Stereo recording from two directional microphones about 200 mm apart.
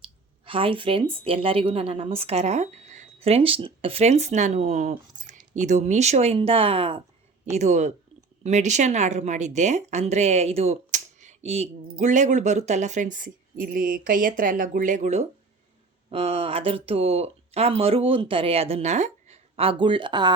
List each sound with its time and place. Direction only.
0.4 s a woman's voice: 25° right (ahead or behind)